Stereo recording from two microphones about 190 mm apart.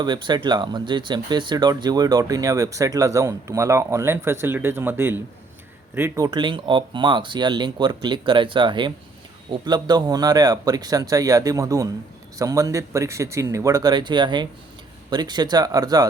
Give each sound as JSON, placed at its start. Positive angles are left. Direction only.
{"t": 0.0, "sound": "speech", "side_deg": -25}